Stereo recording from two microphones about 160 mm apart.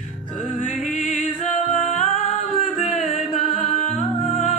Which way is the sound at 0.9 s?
50° left (ahead or behind).